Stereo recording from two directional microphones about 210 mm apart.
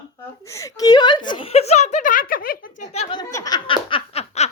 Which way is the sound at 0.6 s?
15° left (ahead or behind).